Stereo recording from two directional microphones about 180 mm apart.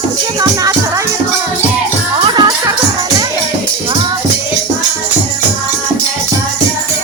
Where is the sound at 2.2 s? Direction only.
25° right (ahead or behind).